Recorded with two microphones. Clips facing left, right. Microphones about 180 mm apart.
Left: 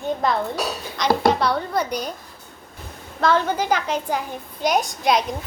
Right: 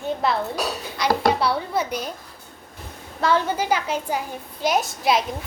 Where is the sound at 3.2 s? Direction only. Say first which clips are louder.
Left 1 dB; 10° right (ahead or behind).